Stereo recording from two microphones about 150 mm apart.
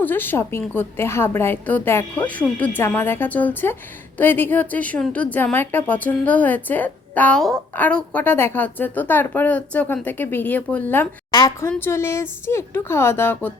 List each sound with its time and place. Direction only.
0.0 s a woman's voice: 15° left (ahead or behind)
11.3 s a woman's voice: 25° left (ahead or behind)
11.7 s a woman's voice: 15° left (ahead or behind)